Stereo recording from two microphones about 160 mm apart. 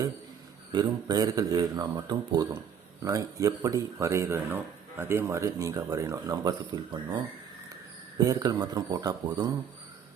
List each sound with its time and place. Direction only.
0.7 s speech: 25° right (ahead or behind)
8.2 s speech: 25° right (ahead or behind)